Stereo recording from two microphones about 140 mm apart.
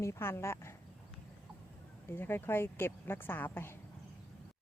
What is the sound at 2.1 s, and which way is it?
Speech, 15° left (ahead or behind).